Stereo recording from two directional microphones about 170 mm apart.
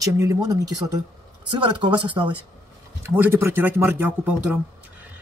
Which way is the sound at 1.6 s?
30° right (ahead or behind).